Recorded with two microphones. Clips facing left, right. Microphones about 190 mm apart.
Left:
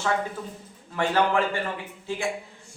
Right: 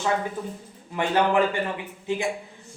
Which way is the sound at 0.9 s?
15° right (ahead or behind).